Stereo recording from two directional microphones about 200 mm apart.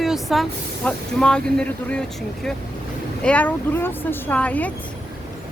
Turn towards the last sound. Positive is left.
turn(degrees=5)  # may be behind; listen again after turning